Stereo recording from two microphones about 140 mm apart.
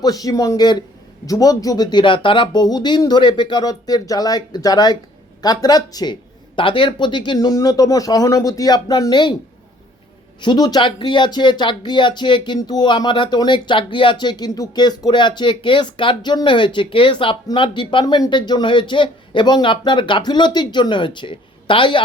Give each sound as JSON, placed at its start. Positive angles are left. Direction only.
{"t": 0.0, "sound": "speech", "side_deg": 25}
{"t": 10.4, "sound": "speech", "side_deg": 30}